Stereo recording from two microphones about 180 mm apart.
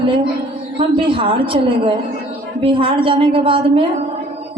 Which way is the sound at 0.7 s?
30° right (ahead or behind).